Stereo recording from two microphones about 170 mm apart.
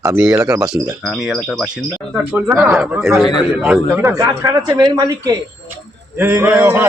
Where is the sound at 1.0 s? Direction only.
Centre (ahead or behind).